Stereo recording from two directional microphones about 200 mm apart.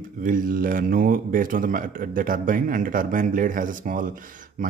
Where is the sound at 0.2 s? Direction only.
40° right (ahead or behind).